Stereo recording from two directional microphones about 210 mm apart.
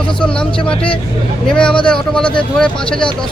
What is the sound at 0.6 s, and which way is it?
Speech, 5° left (ahead or behind).